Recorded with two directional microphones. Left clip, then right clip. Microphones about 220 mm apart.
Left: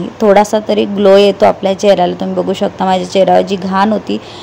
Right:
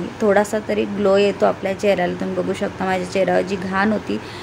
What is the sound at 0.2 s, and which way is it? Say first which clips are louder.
A woman's voice: left 9 dB; 20° left (ahead or behind).